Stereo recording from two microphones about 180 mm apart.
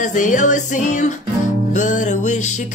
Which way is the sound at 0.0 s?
45° left (ahead or behind).